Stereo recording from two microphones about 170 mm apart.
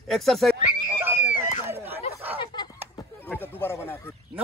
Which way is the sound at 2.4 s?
25° left (ahead or behind).